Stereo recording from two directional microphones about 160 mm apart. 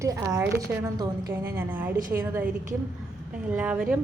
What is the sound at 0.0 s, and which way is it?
A woman's voice, 20° right (ahead or behind).